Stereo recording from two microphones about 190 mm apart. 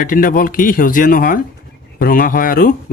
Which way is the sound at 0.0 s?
45° left (ahead or behind).